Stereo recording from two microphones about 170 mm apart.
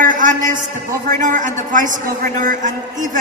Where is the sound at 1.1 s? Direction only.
50° right (ahead or behind).